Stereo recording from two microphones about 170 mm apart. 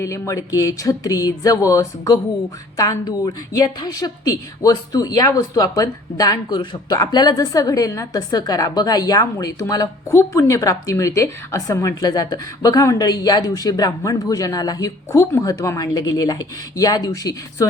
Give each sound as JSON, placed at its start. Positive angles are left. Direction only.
{"t": 0.0, "sound": "a woman's voice", "side_deg": 20}